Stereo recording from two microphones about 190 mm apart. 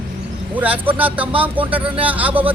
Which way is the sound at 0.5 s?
10° right (ahead or behind).